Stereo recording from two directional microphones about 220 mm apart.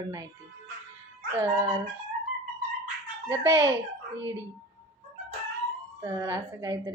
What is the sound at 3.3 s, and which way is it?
Speech, 15° right (ahead or behind).